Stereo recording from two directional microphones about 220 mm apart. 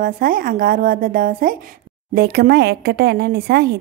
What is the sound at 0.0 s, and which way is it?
A woman's voice, 40° right (ahead or behind).